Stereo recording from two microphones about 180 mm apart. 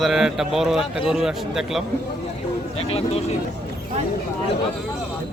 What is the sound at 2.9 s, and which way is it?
Speech, 35° left (ahead or behind).